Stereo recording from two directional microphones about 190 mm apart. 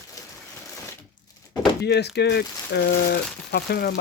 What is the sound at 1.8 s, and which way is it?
Speech, 60° left (ahead or behind).